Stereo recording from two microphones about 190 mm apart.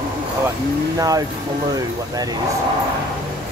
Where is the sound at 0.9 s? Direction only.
20° right (ahead or behind).